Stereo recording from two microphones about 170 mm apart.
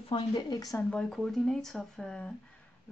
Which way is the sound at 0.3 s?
20° left (ahead or behind).